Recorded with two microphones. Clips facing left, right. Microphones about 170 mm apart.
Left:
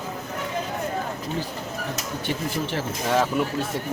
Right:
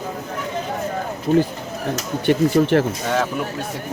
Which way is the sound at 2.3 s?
60° right (ahead or behind).